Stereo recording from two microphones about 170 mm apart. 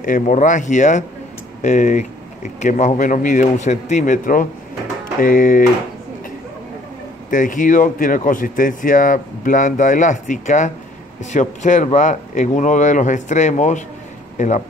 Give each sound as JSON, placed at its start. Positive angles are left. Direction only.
{"t": 0.0, "sound": "speech", "side_deg": 50}
{"t": 7.2, "sound": "speech", "side_deg": 50}
{"t": 14.3, "sound": "a sound", "side_deg": 45}